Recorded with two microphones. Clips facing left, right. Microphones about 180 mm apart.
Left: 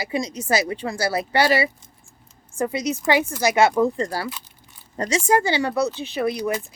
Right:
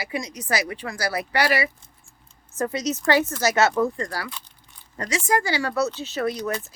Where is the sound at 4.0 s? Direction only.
25° left (ahead or behind).